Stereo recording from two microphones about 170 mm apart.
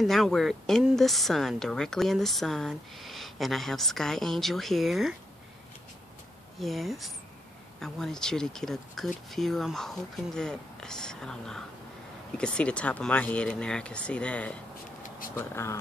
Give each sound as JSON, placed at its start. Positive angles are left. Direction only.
{"t": 0.0, "sound": "speech", "side_deg": 0}
{"t": 6.6, "sound": "speech", "side_deg": 0}